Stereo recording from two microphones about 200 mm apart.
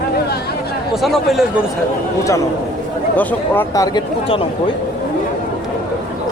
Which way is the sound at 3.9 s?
25° left (ahead or behind).